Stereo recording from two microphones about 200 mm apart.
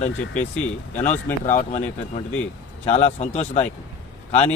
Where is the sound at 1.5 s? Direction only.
35° left (ahead or behind).